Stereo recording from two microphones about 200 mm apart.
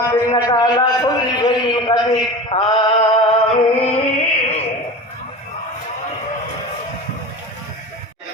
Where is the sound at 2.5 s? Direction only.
25° left (ahead or behind).